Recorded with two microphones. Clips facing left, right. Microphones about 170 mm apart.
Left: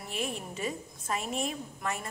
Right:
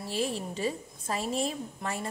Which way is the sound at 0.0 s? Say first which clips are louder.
Right 4 dB; 30° right (ahead or behind).